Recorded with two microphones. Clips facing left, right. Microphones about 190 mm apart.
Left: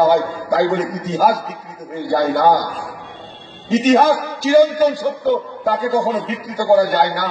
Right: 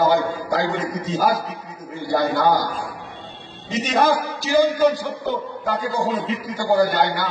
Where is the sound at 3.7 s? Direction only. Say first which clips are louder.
Left 6 dB; 50° left (ahead or behind).